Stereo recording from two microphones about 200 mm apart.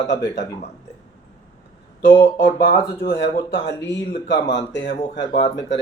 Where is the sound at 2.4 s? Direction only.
50° left (ahead or behind).